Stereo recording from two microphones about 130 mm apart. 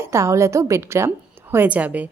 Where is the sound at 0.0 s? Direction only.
20° right (ahead or behind).